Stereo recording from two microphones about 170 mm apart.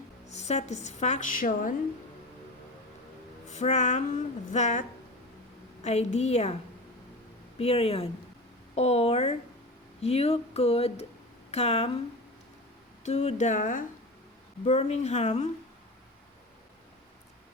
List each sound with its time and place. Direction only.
0.3 s a woman's voice: 40° left (ahead or behind)
3.5 s a woman's voice: 45° left (ahead or behind)
7.6 s a woman's voice: 35° left (ahead or behind)
13.0 s a woman's voice: 40° left (ahead or behind)